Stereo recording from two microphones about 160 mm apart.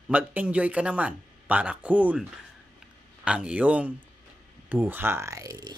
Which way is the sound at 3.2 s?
5° right (ahead or behind).